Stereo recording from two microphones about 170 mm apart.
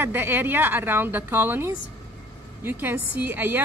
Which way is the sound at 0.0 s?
10° right (ahead or behind).